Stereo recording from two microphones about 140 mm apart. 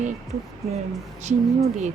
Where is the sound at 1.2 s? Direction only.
55° right (ahead or behind).